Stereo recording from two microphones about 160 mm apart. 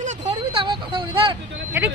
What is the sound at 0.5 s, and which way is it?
Vehicle, 30° right (ahead or behind).